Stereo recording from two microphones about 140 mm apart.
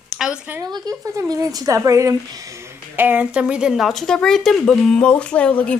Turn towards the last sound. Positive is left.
turn(degrees=10)  # may be behind; listen again after turning